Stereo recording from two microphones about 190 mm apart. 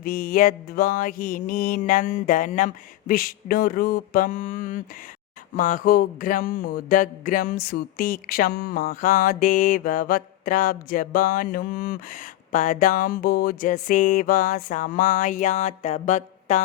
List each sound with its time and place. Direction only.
0.0 s speech: 50° left (ahead or behind)